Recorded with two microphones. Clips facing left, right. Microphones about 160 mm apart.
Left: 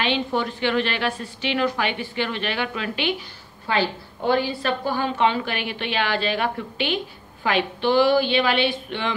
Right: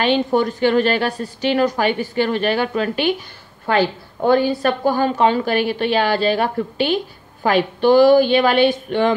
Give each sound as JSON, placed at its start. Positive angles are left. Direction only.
{"t": 0.0, "sound": "a woman's voice", "side_deg": -45}